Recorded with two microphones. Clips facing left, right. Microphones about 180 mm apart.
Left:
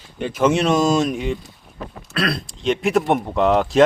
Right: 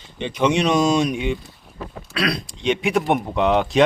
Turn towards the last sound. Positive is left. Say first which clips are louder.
# left 2 dB
turn(degrees=0)  # may be behind; listen again after turning